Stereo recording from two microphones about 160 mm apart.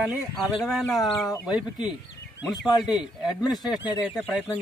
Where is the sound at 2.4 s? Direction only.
25° left (ahead or behind).